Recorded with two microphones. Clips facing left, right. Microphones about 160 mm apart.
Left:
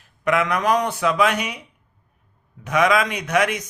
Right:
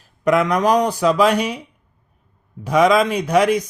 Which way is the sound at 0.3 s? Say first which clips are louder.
Right 4 dB; 35° right (ahead or behind).